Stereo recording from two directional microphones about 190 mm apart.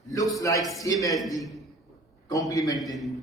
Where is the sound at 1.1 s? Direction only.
Centre (ahead or behind).